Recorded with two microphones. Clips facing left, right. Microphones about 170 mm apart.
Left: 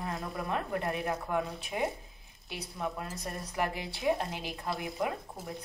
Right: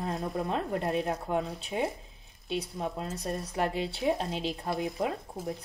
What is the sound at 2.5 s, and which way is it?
Speech, 25° right (ahead or behind).